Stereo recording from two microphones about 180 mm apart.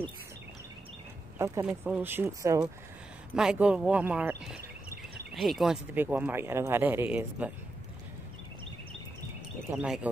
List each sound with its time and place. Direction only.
1.4 s speech: 10° right (ahead or behind)
3.3 s speech: 5° right (ahead or behind)
4.6 s a sound: 60° right (ahead or behind)
5.3 s speech: centre (ahead or behind)
9.7 s speech: 15° right (ahead or behind)